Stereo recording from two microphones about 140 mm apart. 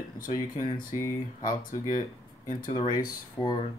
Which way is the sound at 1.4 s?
85° left.